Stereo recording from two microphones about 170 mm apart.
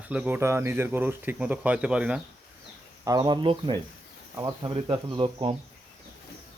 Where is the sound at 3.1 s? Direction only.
25° right (ahead or behind).